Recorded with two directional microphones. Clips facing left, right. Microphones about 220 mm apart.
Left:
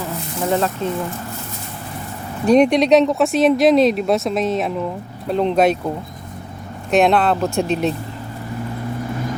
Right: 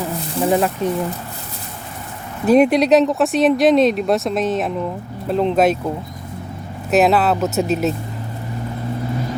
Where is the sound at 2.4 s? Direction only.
5° right (ahead or behind).